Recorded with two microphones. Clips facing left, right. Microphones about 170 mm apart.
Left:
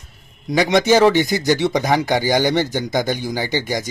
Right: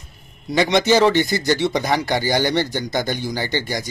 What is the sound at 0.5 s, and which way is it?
Speech, 15° left (ahead or behind).